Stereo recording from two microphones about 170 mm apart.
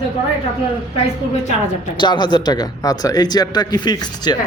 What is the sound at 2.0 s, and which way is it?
Speech, 25° left (ahead or behind).